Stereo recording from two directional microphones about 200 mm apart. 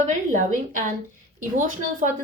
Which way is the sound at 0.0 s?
35° right (ahead or behind).